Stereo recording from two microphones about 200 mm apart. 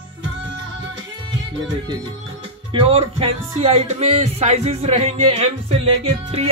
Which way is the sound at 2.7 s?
25° right (ahead or behind).